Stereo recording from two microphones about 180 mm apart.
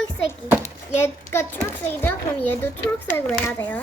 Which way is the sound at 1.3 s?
10° left (ahead or behind).